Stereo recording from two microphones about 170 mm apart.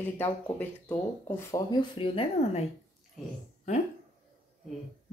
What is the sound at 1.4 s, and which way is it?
Speech, 20° left (ahead or behind).